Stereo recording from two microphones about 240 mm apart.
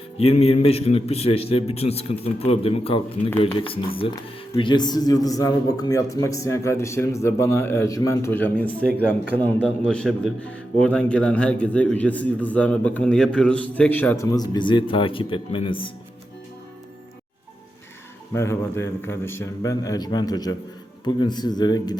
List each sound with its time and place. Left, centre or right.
0.2 s a man's voice: left
18.3 s speech: centre